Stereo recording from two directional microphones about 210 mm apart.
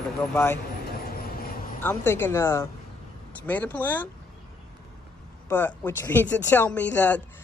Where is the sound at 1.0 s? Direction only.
45° left (ahead or behind).